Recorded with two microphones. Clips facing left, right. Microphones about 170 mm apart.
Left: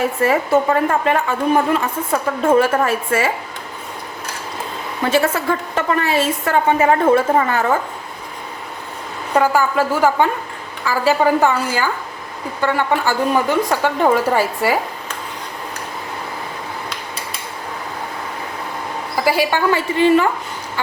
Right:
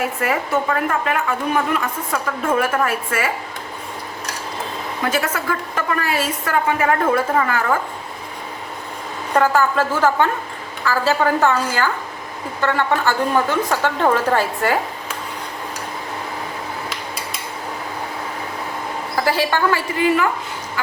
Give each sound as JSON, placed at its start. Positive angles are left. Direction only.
{"t": 0.2, "sound": "a woman's voice", "side_deg": 30}
{"t": 5.0, "sound": "a woman's voice", "side_deg": 30}
{"t": 9.3, "sound": "a woman's voice", "side_deg": 10}
{"t": 19.2, "sound": "a woman's voice", "side_deg": 10}
{"t": 20.0, "sound": "a woman's voice", "side_deg": 25}